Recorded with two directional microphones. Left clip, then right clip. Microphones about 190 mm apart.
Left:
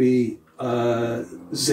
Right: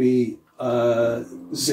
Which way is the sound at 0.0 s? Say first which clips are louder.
Even; 20° right (ahead or behind).